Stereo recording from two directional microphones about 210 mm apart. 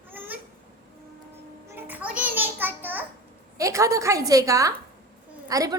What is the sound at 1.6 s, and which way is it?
Music, 10° right (ahead or behind).